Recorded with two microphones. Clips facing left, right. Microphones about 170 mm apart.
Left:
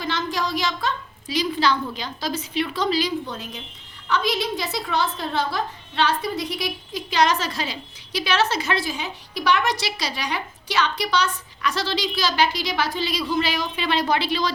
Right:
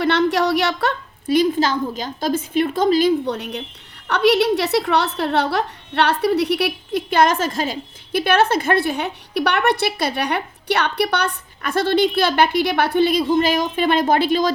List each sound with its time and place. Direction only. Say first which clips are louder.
0.0 s a woman's voice: right 9 dB; 70° right (ahead or behind); by 3.1 s 50° right (ahead or behind)
3.2 s a woman's voice: right 9 dB; 65° right (ahead or behind); by 14.5 s 45° right (ahead or behind)